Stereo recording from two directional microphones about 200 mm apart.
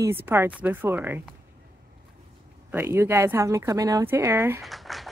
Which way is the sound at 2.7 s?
10° right (ahead or behind).